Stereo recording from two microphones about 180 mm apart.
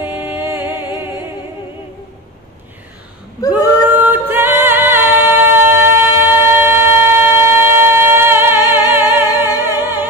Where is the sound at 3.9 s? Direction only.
10° right (ahead or behind).